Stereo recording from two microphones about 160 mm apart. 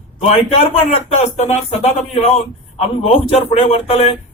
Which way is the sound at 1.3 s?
40° left (ahead or behind).